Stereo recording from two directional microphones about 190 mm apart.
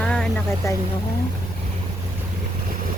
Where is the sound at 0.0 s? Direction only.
5° left (ahead or behind).